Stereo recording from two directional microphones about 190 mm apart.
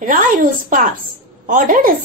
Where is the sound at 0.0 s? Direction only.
45° right (ahead or behind).